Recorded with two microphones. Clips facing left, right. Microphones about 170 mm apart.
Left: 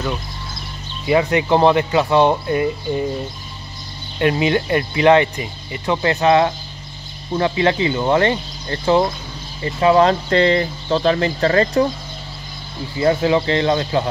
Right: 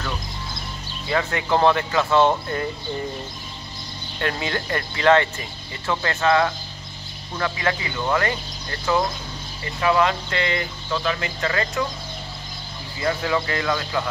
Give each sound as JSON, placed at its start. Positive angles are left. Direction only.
{"t": 1.0, "sound": "speech", "side_deg": 20}
{"t": 4.2, "sound": "speech", "side_deg": 20}
{"t": 13.0, "sound": "speech", "side_deg": 25}